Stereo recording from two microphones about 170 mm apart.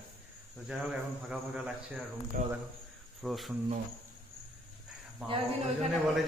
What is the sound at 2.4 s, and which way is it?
Speech, 60° right (ahead or behind).